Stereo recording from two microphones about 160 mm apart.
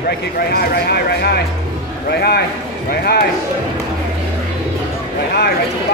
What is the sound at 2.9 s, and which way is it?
Speech, 75° left (ahead or behind).